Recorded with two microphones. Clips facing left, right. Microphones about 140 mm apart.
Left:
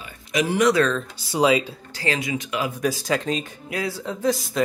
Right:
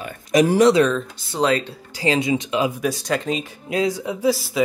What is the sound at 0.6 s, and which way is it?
Speech, 20° right (ahead or behind).